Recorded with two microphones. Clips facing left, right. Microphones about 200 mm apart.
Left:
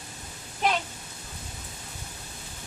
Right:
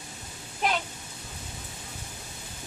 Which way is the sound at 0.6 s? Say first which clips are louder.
Left 2 dB; centre (ahead or behind).